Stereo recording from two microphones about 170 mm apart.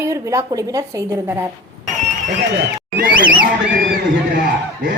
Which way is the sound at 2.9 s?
55° right (ahead or behind).